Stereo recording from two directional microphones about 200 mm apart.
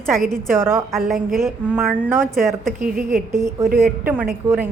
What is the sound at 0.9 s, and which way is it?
A woman's voice, centre (ahead or behind).